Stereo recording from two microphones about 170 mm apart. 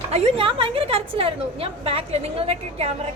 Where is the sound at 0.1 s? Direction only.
35° right (ahead or behind).